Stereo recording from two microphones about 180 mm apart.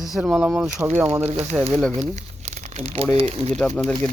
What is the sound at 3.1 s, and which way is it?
Speech, 30° right (ahead or behind).